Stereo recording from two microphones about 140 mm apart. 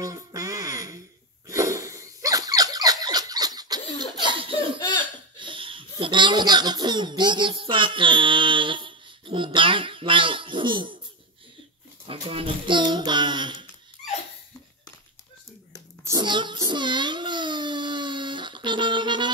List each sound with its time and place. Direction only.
0.0 s music: 25° right (ahead or behind)
1.5 s squeak: 20° right (ahead or behind)
4.0 s laughter: 35° right (ahead or behind)
12.1 s child singing: 40° right (ahead or behind)
16.0 s a sound: 25° right (ahead or behind)